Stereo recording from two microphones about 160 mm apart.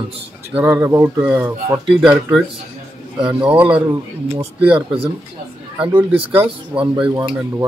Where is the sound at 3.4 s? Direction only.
10° right (ahead or behind).